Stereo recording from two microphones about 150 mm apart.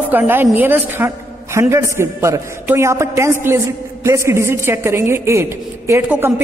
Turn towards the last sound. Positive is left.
turn(degrees=-15)  # may be behind; listen again after turning